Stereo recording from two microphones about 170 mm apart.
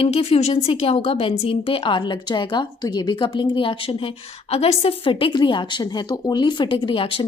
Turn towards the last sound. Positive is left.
turn(degrees=30)  # may be behind; listen again after turning